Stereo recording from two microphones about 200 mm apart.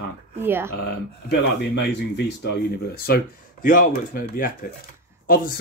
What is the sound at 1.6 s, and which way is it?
Speech, 55° left (ahead or behind).